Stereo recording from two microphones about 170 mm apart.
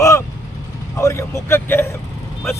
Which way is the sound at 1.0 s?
15° left (ahead or behind).